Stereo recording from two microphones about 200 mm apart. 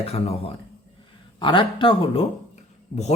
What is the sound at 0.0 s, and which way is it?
Speech, 30° left (ahead or behind).